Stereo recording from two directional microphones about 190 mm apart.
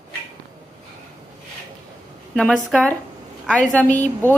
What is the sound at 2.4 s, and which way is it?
Speech, centre (ahead or behind).